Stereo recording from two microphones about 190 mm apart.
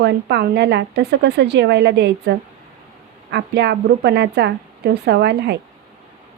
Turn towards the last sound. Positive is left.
turn(degrees=-60)  # may be behind; listen again after turning